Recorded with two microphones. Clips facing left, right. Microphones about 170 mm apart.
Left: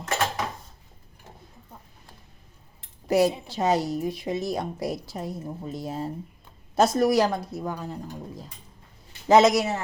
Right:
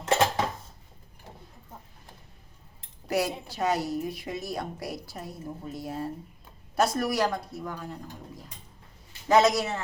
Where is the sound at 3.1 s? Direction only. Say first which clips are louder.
Left 7 dB; 25° left (ahead or behind).